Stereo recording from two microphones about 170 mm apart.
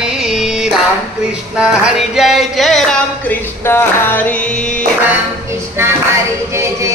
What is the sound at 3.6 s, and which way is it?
Music, 15° left (ahead or behind).